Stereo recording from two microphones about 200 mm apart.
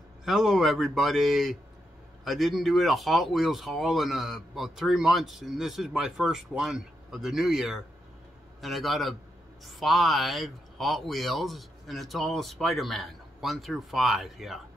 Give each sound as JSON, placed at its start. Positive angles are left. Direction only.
{"t": 0.2, "sound": "speech", "side_deg": 0}